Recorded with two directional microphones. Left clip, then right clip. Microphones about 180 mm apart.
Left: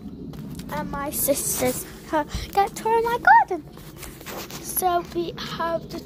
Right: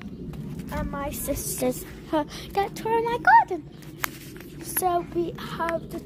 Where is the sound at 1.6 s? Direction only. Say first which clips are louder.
Left 2 dB; 15° right (ahead or behind).